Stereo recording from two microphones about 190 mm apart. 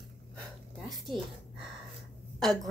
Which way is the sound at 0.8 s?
Centre (ahead or behind).